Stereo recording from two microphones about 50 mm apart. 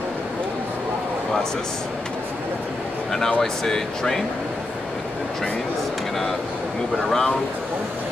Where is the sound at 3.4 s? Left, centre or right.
Centre.